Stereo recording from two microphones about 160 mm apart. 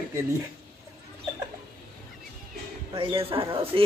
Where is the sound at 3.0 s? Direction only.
35° right (ahead or behind).